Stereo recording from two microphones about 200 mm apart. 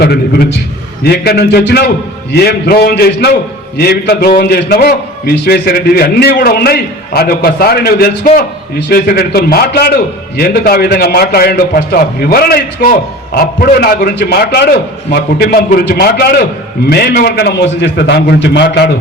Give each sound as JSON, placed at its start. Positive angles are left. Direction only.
{"t": 0.0, "sound": "a man's voice", "side_deg": 50}